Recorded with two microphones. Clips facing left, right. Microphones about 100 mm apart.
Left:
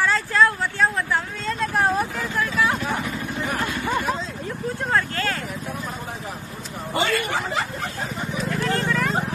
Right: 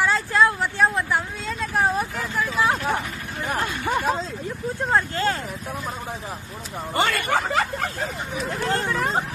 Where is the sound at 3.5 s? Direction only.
20° right (ahead or behind).